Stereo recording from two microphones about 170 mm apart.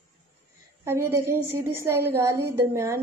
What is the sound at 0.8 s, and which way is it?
A woman's voice, 15° right (ahead or behind).